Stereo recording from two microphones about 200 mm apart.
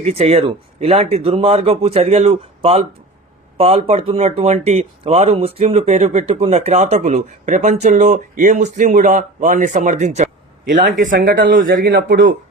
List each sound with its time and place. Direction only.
0.0 s speech: 30° right (ahead or behind); by 12.1 s 45° right (ahead or behind)